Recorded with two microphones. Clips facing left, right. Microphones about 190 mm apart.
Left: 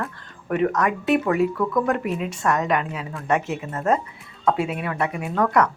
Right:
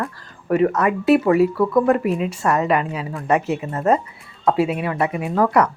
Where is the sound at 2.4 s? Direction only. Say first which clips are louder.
Right 3 dB; 5° right (ahead or behind).